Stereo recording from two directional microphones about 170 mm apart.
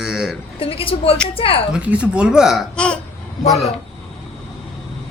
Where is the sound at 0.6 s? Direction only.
35° left (ahead or behind).